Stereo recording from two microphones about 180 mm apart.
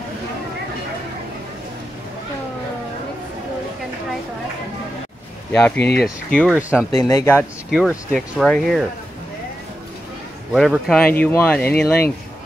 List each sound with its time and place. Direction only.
5.5 s speech: 10° left (ahead or behind)
5.8 s speech: 65° left (ahead or behind)
6.0 s speech: 5° left (ahead or behind)
6.5 s speech: 5° right (ahead or behind)
7.0 s speech: 15° left (ahead or behind)
7.7 s speech: centre (ahead or behind)
10.5 s speech: centre (ahead or behind)